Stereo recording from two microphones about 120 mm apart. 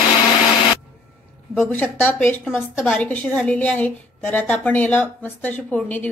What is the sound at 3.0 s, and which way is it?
A woman's voice, 10° left (ahead or behind).